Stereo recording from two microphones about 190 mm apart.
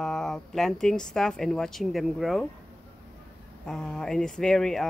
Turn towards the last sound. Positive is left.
turn(degrees=0)  # may be behind; listen again after turning